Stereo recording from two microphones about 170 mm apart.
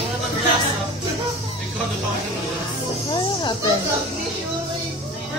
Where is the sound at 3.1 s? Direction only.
25° left (ahead or behind).